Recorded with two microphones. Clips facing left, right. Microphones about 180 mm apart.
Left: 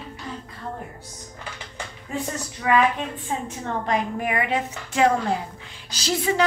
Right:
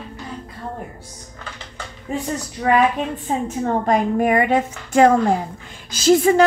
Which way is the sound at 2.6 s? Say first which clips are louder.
Right 4 dB; 35° right (ahead or behind).